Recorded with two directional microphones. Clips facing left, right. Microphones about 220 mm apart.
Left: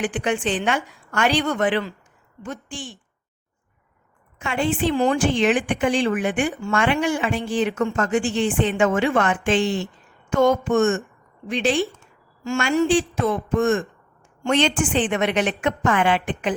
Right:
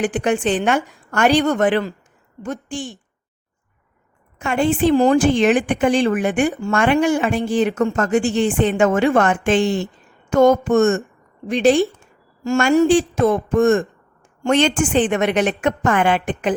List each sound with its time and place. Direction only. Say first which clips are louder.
0.0 s a woman's voice: right 4 dB; 45° right (ahead or behind)
4.4 s a woman's voice: right 5 dB; 45° right (ahead or behind)